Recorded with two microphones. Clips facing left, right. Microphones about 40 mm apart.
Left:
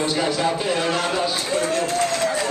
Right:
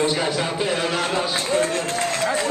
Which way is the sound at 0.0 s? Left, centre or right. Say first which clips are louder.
Even; centre.